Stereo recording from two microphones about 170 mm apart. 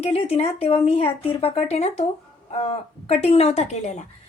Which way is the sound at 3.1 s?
35° left (ahead or behind).